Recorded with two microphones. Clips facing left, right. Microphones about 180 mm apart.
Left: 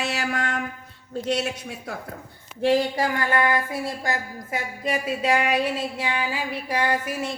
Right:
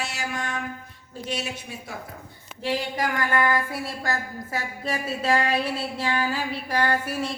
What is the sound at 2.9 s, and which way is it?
A woman's voice, 25° left (ahead or behind).